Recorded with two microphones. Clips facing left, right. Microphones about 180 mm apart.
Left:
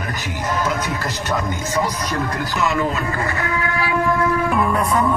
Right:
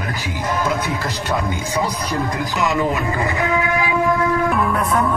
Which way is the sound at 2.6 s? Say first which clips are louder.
Right 1 dB; 15° right (ahead or behind).